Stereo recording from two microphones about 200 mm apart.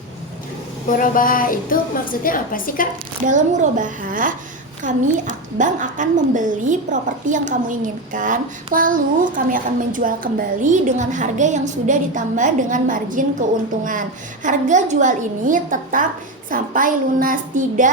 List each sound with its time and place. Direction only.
0.9 s a sound: 40° left (ahead or behind)
3.2 s a woman's voice: 40° right (ahead or behind)
14.4 s a woman's voice: 35° right (ahead or behind)